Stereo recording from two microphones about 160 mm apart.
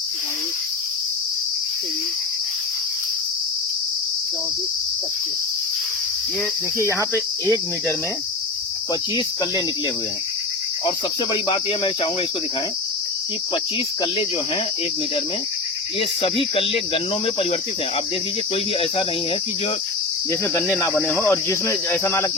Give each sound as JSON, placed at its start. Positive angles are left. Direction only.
{"t": 6.7, "sound": "cricket", "side_deg": -15}
{"t": 10.8, "sound": "speech", "side_deg": 30}
{"t": 16.0, "sound": "speech", "side_deg": 35}
{"t": 21.2, "sound": "cricket", "side_deg": 15}